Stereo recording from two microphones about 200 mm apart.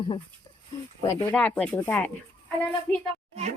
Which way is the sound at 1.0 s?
15° left (ahead or behind).